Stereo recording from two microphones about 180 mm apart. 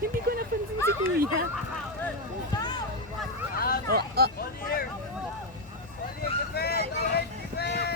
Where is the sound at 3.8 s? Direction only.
60° right (ahead or behind).